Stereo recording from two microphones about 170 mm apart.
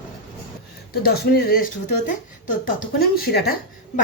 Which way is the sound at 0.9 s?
65° left (ahead or behind).